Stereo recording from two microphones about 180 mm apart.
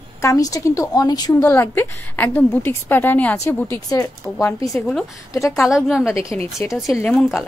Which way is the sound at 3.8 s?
20° left (ahead or behind).